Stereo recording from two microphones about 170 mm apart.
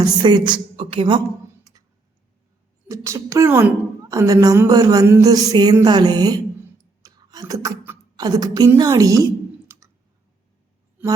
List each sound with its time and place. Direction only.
0.0 s speech: 25° right (ahead or behind)
2.9 s a woman's voice: 15° right (ahead or behind)
7.0 s a sound: 20° right (ahead or behind)
9.7 s clicking: 15° right (ahead or behind)